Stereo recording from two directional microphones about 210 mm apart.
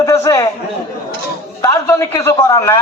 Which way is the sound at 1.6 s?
15° left (ahead or behind).